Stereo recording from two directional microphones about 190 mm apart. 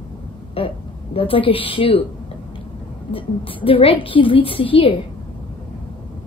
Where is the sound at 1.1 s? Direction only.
30° left (ahead or behind).